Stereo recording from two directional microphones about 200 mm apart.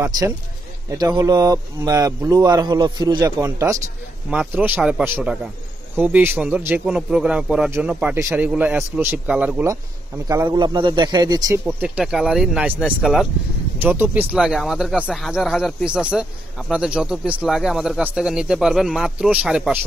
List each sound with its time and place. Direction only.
0.8 s a man's voice: 20° right (ahead or behind)
11.6 s speech: 5° right (ahead or behind)